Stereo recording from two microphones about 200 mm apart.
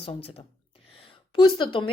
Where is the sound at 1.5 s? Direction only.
25° left (ahead or behind).